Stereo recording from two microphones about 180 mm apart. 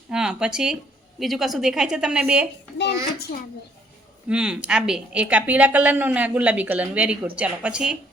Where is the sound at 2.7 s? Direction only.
70° left (ahead or behind).